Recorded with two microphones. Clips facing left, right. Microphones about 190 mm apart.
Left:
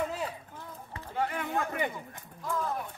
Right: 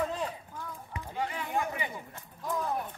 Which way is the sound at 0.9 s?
15° right (ahead or behind).